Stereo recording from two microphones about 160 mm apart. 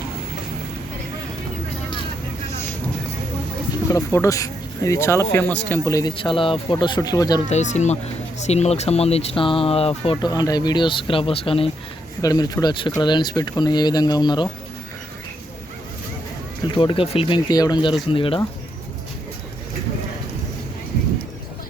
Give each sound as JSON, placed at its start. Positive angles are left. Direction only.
{"t": 3.9, "sound": "speech", "side_deg": 20}
{"t": 7.4, "sound": "speech", "side_deg": 45}
{"t": 12.2, "sound": "speech", "side_deg": 25}
{"t": 16.6, "sound": "speech", "side_deg": 30}